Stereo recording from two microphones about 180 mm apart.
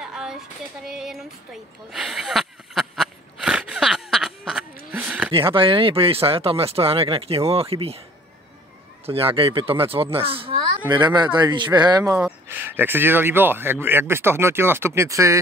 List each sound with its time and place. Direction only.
0.0 s a sound: 5° right (ahead or behind)
0.8 s speech: 5° right (ahead or behind)
1.9 s a sound: centre (ahead or behind)
5.3 s speech: 30° right (ahead or behind)
9.0 s speech: 30° right (ahead or behind)
12.2 s speech: 10° right (ahead or behind)